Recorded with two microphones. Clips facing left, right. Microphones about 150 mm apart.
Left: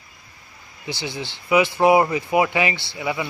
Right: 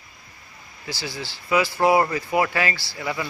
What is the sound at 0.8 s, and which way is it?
Speech, 20° left (ahead or behind).